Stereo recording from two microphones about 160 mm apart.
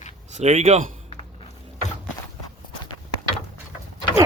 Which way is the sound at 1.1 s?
40° left (ahead or behind).